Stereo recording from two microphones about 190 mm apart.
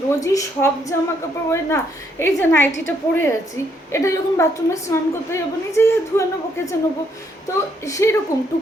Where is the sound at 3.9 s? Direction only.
15° left (ahead or behind).